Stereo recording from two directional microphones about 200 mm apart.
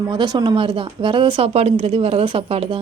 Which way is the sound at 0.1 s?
20° right (ahead or behind).